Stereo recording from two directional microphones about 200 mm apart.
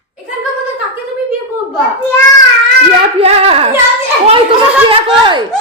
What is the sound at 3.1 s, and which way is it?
Speech, 30° right (ahead or behind).